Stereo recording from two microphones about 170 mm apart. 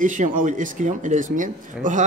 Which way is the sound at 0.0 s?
50° right (ahead or behind).